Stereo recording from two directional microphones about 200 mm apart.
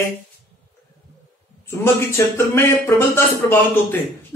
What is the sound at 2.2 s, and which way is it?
A man's voice, 15° left (ahead or behind).